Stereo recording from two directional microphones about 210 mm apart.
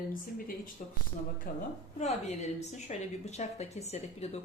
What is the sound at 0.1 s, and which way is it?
A woman's voice, 40° left (ahead or behind).